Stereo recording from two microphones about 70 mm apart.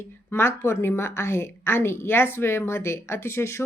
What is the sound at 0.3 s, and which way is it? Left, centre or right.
A woman's voice, left.